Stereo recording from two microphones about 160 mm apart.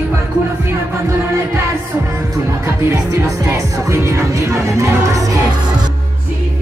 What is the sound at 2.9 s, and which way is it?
Music, 15° right (ahead or behind).